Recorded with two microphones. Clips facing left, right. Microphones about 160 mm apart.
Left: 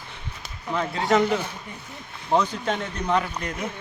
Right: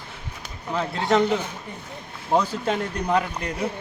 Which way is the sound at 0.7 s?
Centre (ahead or behind).